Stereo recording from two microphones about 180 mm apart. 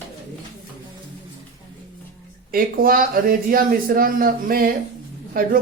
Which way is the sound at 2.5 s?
55° right (ahead or behind).